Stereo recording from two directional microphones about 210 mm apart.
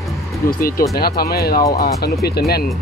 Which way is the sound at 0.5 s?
45° left (ahead or behind).